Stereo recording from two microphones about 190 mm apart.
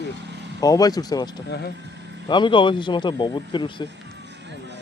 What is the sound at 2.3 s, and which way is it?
Speech, 25° left (ahead or behind).